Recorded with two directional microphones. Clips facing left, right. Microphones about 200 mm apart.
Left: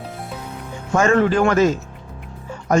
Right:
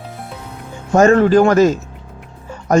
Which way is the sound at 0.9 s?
40° right (ahead or behind).